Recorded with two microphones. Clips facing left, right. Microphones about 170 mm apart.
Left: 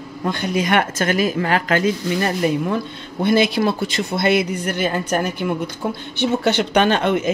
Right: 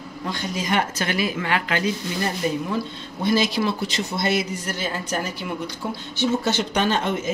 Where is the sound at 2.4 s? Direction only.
65° left (ahead or behind).